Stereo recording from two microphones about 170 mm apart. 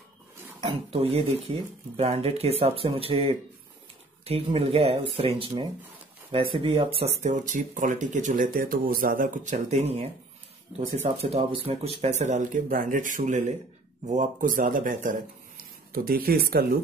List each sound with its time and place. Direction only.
0.6 s speech: 30° right (ahead or behind)
7.2 s speech: 50° right (ahead or behind)